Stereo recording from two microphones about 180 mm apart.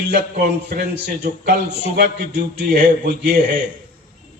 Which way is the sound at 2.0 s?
70° right (ahead or behind).